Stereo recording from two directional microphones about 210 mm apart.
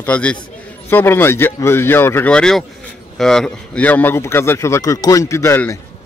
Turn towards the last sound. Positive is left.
turn(degrees=10)  # may be behind; listen again after turning